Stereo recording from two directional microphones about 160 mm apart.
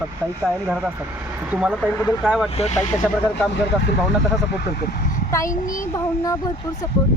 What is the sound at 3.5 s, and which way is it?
Speech, 90° left.